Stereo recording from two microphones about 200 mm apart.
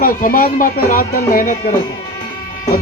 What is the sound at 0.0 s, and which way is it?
Speech, 45° left (ahead or behind).